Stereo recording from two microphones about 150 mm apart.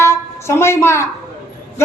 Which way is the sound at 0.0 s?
20° left (ahead or behind).